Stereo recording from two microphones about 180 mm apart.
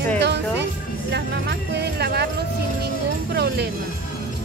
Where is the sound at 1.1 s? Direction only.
70° right (ahead or behind).